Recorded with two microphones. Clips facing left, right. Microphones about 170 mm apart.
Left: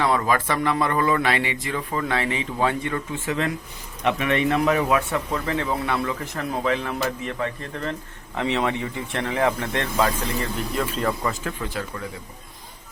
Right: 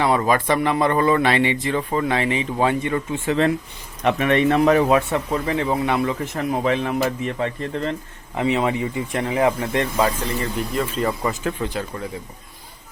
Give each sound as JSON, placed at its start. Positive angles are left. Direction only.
{"t": 0.0, "sound": "speech", "side_deg": -20}
{"t": 8.4, "sound": "speech", "side_deg": -5}
{"t": 11.2, "sound": "speech", "side_deg": -20}